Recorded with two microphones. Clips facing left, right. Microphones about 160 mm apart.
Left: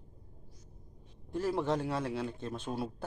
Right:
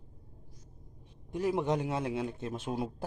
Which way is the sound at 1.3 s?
15° right (ahead or behind).